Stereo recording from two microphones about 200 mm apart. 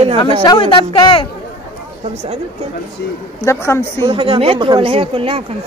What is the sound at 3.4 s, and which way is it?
Speech, 15° left (ahead or behind).